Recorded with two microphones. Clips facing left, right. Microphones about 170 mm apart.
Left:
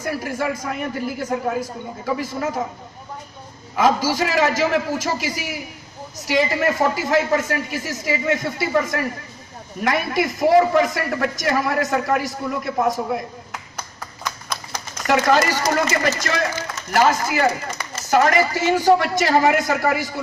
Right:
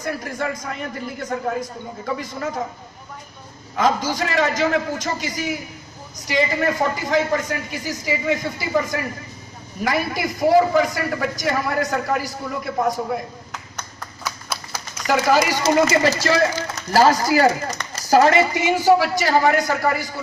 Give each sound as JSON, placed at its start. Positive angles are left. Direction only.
{"t": 0.0, "sound": "a man's voice", "side_deg": 5}
{"t": 3.7, "sound": "a man's voice", "side_deg": 5}
{"t": 14.2, "sound": "typewriter", "side_deg": -5}
{"t": 15.6, "sound": "a man's voice", "side_deg": -30}